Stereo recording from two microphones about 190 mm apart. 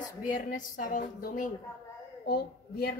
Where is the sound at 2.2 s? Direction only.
55° left (ahead or behind).